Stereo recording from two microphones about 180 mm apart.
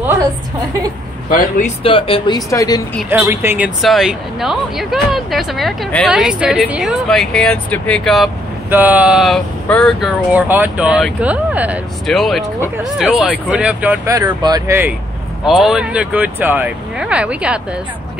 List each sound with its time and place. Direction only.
1.3 s speech: 50° left (ahead or behind)
1.8 s speech: 30° left (ahead or behind)
3.1 s speech: 15° right (ahead or behind)
8.6 s speech: 10° right (ahead or behind)
10.0 s speech: 10° right (ahead or behind)
15.4 s speech: centre (ahead or behind)